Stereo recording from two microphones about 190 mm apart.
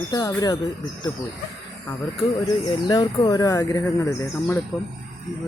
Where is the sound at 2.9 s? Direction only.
20° left (ahead or behind).